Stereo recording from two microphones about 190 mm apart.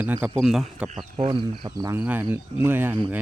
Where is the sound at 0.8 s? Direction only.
40° right (ahead or behind).